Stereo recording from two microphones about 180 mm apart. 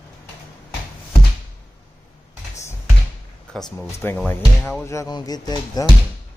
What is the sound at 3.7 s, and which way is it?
Speech, 10° left (ahead or behind).